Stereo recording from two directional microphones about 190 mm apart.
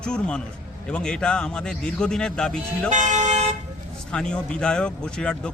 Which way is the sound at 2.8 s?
40° right (ahead or behind).